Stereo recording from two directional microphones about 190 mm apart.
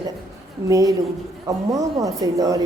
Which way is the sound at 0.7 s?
20° right (ahead or behind).